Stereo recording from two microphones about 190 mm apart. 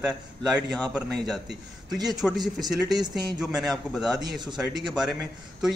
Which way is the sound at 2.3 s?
20° right (ahead or behind).